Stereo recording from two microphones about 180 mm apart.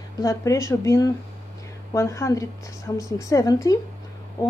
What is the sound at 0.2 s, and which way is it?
Speech, 15° left (ahead or behind).